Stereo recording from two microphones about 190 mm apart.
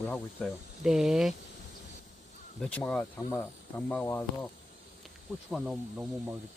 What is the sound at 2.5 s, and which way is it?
Speech, 5° left (ahead or behind).